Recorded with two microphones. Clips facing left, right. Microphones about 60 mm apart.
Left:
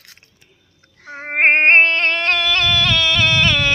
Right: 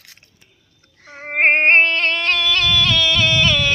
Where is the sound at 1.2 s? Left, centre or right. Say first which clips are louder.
Left 1 dB; centre.